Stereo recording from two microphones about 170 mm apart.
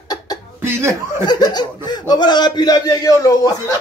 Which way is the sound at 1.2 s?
25° left (ahead or behind).